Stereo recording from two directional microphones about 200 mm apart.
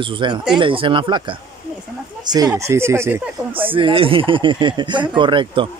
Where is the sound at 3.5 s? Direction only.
25° right (ahead or behind).